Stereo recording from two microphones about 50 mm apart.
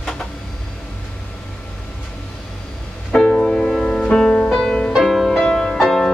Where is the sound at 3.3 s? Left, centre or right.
Centre.